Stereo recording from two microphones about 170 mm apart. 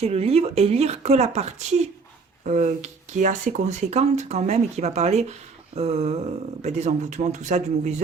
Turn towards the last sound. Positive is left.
turn(degrees=-45)  # may be behind; listen again after turning